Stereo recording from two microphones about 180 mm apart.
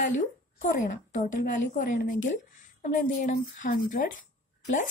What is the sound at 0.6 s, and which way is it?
A woman's voice, 45° left (ahead or behind).